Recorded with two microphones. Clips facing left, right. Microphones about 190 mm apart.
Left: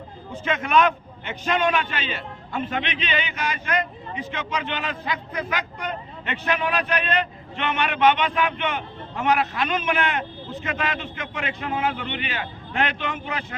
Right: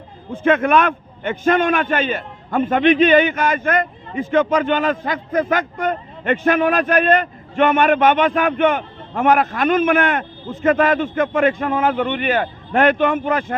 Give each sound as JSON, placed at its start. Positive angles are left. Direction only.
{"t": 0.3, "sound": "a man's voice", "side_deg": -55}